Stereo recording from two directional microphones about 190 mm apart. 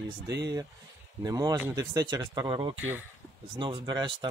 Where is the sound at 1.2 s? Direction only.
20° right (ahead or behind).